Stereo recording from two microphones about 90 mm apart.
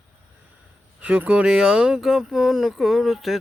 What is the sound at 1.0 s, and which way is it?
Speech, 15° right (ahead or behind).